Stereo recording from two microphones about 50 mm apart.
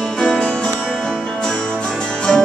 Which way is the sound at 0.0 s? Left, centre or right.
Centre.